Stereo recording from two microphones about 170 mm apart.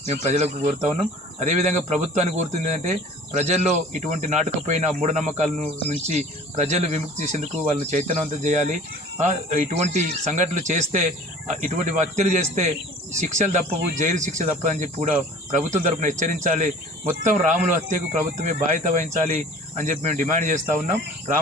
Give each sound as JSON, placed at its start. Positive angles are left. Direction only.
{"t": 0.0, "sound": "speech", "side_deg": -40}